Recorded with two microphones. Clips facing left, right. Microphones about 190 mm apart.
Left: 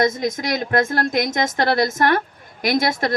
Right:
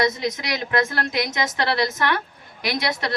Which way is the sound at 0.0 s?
50° left (ahead or behind).